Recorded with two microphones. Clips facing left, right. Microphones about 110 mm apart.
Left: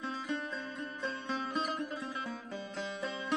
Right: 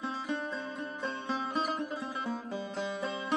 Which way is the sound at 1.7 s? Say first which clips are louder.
Right 3 dB; 30° right (ahead or behind).